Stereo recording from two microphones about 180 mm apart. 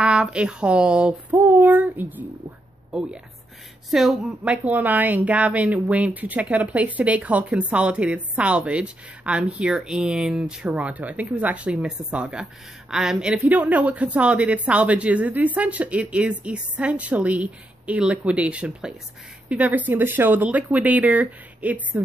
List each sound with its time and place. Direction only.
0.0 s a woman's voice: 5° right (ahead or behind)